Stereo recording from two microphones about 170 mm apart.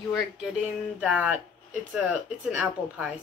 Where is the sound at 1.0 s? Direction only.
5° right (ahead or behind).